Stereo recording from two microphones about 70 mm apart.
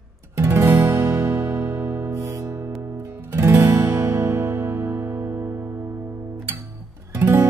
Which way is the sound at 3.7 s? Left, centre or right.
Right.